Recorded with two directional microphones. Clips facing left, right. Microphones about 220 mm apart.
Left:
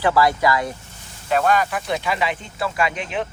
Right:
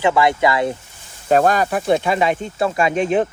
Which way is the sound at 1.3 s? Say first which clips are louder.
Right 4 dB; 40° right (ahead or behind).